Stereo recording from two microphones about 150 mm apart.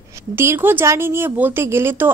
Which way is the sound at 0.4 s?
15° right (ahead or behind).